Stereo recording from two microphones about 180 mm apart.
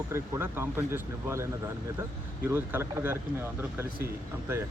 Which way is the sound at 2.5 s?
15° right (ahead or behind).